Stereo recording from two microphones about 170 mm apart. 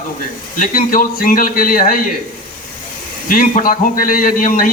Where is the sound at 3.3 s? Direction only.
55° left (ahead or behind).